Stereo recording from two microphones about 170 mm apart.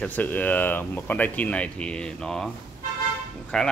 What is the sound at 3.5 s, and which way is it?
Speech, 5° left (ahead or behind).